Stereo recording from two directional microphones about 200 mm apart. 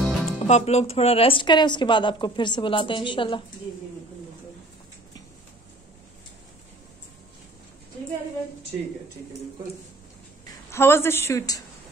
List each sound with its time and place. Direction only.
0.0 s music: centre (ahead or behind)
0.5 s a woman's voice: 35° left (ahead or behind)
10.7 s speech: 10° left (ahead or behind)